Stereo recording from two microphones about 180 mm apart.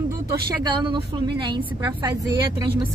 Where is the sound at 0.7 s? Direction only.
25° right (ahead or behind).